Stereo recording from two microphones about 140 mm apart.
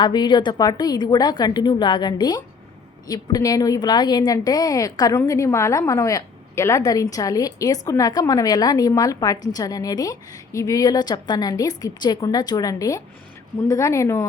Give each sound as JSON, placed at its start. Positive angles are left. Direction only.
{"t": 0.0, "sound": "a woman's voice", "side_deg": 30}